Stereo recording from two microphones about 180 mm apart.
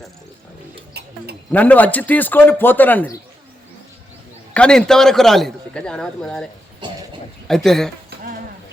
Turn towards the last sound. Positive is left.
turn(degrees=0)  # may be behind; listen again after turning